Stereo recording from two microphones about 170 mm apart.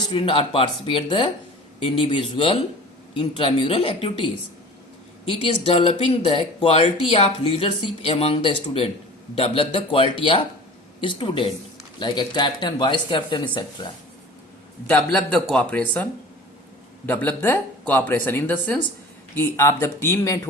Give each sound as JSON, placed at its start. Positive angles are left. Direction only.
{"t": 0.1, "sound": "speech", "side_deg": 35}
{"t": 5.2, "sound": "speech", "side_deg": 35}
{"t": 14.8, "sound": "speech", "side_deg": 5}
{"t": 17.1, "sound": "speech", "side_deg": 10}